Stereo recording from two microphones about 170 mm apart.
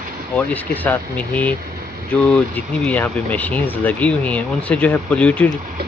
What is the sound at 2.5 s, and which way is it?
Speech, 10° left (ahead or behind).